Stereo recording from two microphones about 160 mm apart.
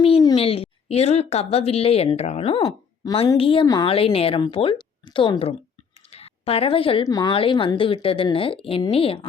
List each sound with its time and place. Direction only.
0.3 s a woman's voice: 35° left (ahead or behind)